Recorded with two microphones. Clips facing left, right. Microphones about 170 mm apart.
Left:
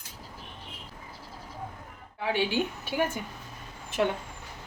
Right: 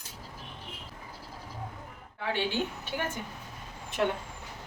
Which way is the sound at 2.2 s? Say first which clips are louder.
Left 3 dB; 15° left (ahead or behind).